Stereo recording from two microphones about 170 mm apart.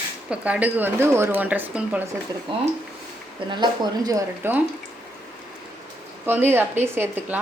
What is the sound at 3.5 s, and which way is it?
Speech, 25° right (ahead or behind).